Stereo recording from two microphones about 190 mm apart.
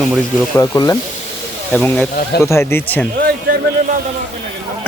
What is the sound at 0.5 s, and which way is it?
Speech, 15° left (ahead or behind).